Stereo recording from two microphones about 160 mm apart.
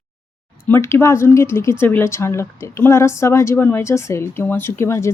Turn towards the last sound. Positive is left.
turn(degrees=15)  # may be behind; listen again after turning